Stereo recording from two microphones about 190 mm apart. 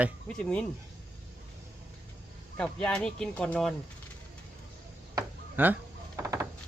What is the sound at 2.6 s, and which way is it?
Speech, 5° left (ahead or behind).